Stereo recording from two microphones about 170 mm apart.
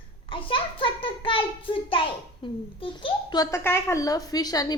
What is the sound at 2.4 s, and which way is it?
A child's voice, 30° left (ahead or behind).